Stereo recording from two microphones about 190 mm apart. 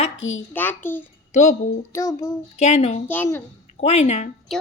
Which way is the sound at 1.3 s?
40° left (ahead or behind).